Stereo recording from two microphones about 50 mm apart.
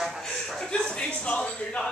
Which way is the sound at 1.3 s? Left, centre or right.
Centre.